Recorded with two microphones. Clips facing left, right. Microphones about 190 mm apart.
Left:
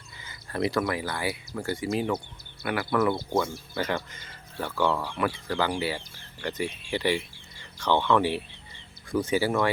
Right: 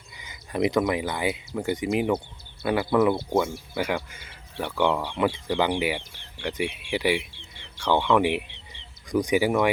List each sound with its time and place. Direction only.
0.2 s speech: 15° right (ahead or behind)
3.8 s speech: 10° right (ahead or behind)
7.2 s chicken: 70° right (ahead or behind)
7.8 s speech: 15° right (ahead or behind)